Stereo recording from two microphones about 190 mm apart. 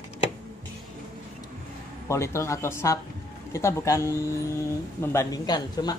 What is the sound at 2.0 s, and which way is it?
Speech, 15° left (ahead or behind).